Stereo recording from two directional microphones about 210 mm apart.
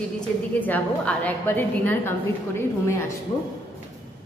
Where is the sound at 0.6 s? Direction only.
5° left (ahead or behind).